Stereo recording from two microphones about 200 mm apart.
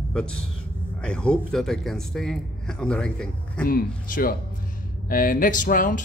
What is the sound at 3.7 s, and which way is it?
Speech, 45° left (ahead or behind).